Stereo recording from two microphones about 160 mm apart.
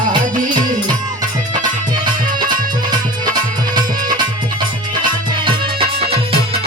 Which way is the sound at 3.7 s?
25° right (ahead or behind).